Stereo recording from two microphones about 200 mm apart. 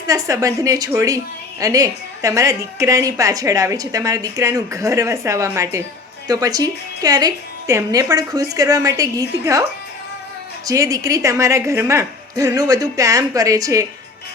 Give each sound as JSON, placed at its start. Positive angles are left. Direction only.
{"t": 0.1, "sound": "a woman's voice", "side_deg": -15}
{"t": 10.7, "sound": "a woman's voice", "side_deg": -15}